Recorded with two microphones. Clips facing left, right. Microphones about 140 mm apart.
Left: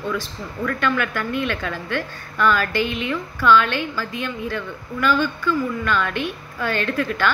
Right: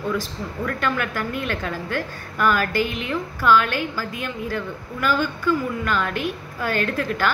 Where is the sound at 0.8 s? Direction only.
40° right (ahead or behind).